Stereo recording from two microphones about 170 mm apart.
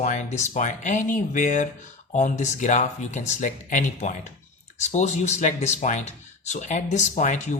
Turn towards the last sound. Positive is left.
turn(degrees=45)  # may be behind; listen again after turning